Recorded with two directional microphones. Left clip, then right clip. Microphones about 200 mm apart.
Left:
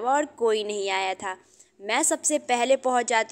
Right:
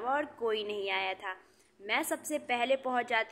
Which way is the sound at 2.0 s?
35° left (ahead or behind).